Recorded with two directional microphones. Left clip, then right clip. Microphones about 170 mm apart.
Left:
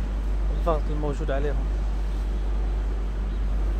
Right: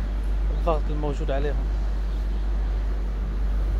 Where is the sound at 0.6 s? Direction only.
5° right (ahead or behind).